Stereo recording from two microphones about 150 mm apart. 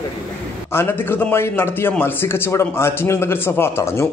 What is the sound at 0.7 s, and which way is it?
A man's voice, 15° left (ahead or behind).